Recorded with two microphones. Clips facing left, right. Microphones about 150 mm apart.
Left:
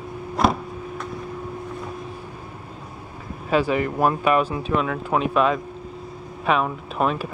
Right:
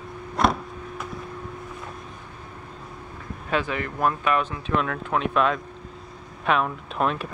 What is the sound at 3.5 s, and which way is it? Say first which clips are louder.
Speech: left 6 dB; 5° left (ahead or behind).